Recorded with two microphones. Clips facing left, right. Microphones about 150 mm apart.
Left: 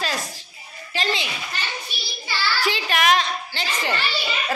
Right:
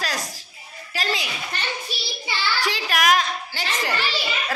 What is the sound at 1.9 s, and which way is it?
Child singing, 35° right (ahead or behind).